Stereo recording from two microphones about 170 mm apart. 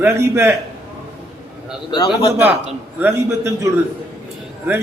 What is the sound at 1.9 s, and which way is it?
Speech, 25° left (ahead or behind).